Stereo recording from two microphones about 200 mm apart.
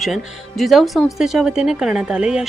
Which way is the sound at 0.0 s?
Centre (ahead or behind).